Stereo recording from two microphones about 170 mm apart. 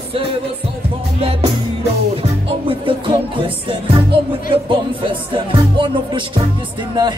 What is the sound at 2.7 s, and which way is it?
Music, 30° right (ahead or behind).